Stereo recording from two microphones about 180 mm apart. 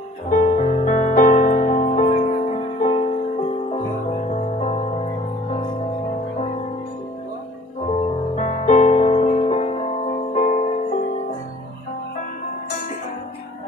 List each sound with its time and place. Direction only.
0.3 s music: 45° left (ahead or behind)
4.3 s music: 35° left (ahead or behind)
7.9 s music: 40° left (ahead or behind)